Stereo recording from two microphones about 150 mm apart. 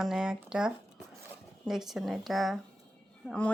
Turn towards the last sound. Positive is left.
turn(degrees=10)  # may be behind; listen again after turning